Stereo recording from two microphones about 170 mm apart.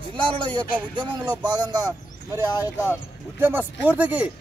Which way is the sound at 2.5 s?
20° left (ahead or behind).